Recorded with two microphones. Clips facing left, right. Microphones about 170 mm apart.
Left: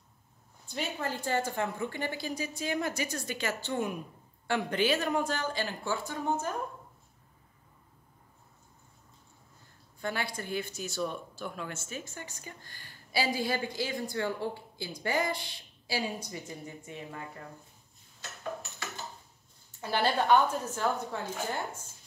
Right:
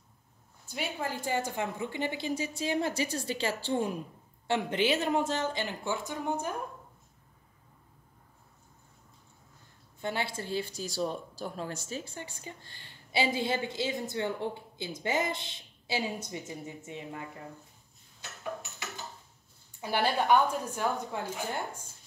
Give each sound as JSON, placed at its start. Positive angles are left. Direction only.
{"t": 0.7, "sound": "speech", "side_deg": -10}
{"t": 9.9, "sound": "speech", "side_deg": -25}
{"t": 19.8, "sound": "a woman's voice", "side_deg": -15}